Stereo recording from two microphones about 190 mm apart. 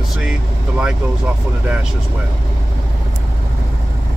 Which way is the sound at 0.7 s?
5° right (ahead or behind).